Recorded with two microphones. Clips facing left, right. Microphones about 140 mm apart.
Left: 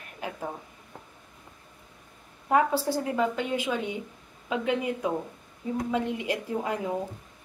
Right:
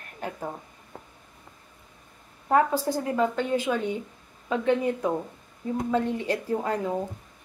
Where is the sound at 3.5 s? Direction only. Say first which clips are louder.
Right 3 dB; 15° left (ahead or behind).